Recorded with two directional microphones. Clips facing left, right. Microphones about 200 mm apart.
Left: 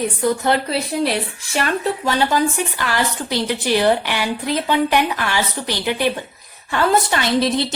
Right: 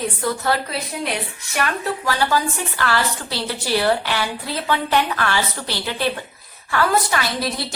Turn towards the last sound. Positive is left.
turn(degrees=25)  # may be behind; listen again after turning